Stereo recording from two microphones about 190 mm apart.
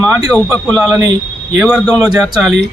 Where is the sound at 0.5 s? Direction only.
5° left (ahead or behind).